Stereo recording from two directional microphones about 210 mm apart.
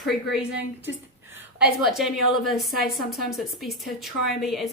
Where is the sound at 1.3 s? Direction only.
5° right (ahead or behind).